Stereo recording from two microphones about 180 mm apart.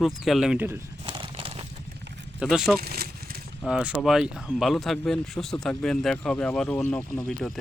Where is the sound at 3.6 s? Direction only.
5° right (ahead or behind).